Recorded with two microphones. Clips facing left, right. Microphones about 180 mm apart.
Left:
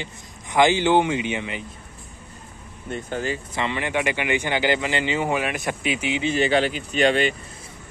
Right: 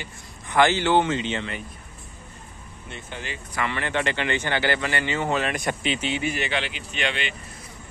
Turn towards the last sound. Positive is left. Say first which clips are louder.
# left 9 dB
turn(degrees=40)  # may be behind; listen again after turning